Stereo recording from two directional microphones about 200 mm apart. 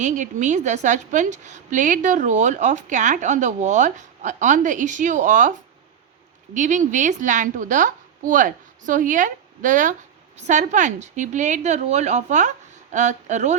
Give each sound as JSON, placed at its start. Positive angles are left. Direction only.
{"t": 0.0, "sound": "a woman's voice", "side_deg": -40}